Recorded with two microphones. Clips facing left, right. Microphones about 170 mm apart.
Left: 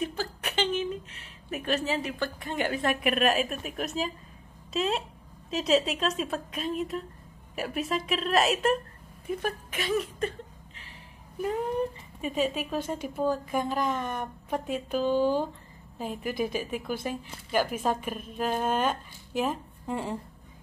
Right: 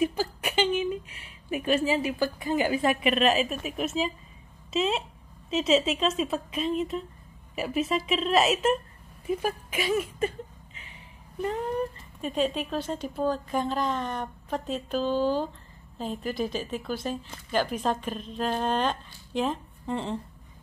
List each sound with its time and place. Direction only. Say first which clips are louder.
0.1 s a woman's voice: right 4 dB; 10° right (ahead or behind)
12.2 s speech: right 1 dB; 5° left (ahead or behind)